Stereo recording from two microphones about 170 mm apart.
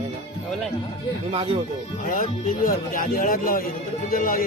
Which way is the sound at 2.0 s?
55° left (ahead or behind).